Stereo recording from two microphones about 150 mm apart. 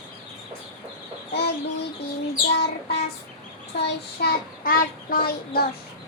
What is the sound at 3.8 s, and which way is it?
Child singing, 80° left.